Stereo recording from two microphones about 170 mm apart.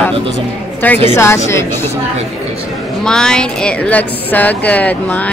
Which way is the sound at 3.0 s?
5° left (ahead or behind).